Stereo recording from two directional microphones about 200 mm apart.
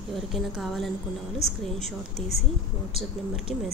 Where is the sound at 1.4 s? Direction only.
35° left (ahead or behind).